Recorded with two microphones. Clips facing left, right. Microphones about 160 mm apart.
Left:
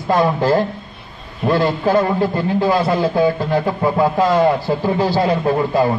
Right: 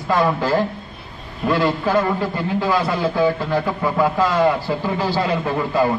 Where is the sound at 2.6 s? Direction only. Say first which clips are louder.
Left 3 dB; 30° left (ahead or behind).